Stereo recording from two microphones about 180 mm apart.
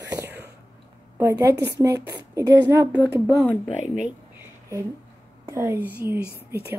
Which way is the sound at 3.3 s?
Centre (ahead or behind).